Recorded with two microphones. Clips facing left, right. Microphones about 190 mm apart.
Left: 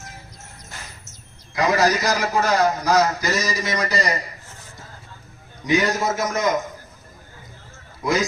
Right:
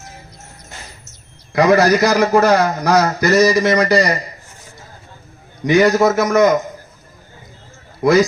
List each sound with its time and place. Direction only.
1.5 s a man's voice: 65° right (ahead or behind)
5.6 s a man's voice: 70° right (ahead or behind)